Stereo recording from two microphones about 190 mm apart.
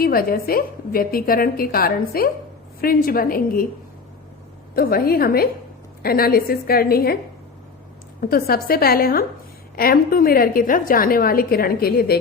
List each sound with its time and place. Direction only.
0.0 s a woman's voice: 50° left (ahead or behind)
4.7 s a woman's voice: 50° left (ahead or behind)
8.2 s a woman's voice: 50° left (ahead or behind)